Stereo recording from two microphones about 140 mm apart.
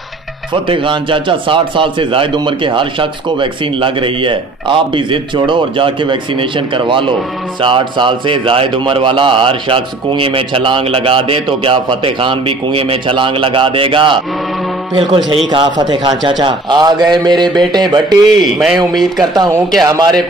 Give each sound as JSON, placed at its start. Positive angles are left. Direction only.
{"t": 0.7, "sound": "speech", "side_deg": -35}
{"t": 18.4, "sound": "speech", "side_deg": -5}
{"t": 19.3, "sound": "a man's voice", "side_deg": -30}